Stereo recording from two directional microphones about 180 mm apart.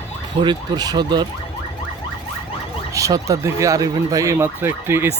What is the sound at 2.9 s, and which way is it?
Speech, 20° right (ahead or behind).